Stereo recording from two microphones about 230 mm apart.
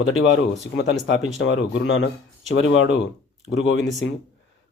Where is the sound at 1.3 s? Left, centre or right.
Left.